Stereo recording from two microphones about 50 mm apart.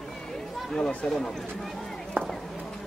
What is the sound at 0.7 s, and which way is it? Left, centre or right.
Speech, centre.